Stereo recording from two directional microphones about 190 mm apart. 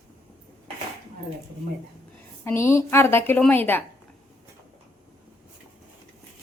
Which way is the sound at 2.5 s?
15° left (ahead or behind).